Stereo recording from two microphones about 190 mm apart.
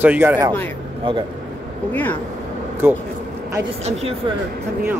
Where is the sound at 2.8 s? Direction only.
10° right (ahead or behind).